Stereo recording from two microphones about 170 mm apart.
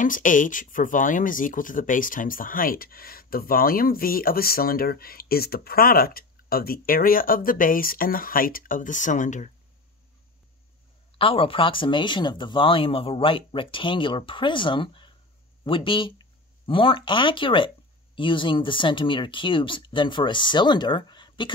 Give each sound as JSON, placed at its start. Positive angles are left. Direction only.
{"t": 0.0, "sound": "speech", "side_deg": 50}
{"t": 11.1, "sound": "speech", "side_deg": 30}